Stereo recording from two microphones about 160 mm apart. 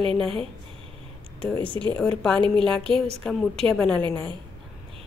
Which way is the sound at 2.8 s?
35° right (ahead or behind).